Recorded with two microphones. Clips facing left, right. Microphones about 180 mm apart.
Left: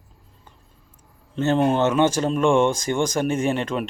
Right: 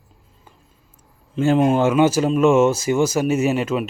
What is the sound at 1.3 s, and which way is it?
Speech, 10° right (ahead or behind).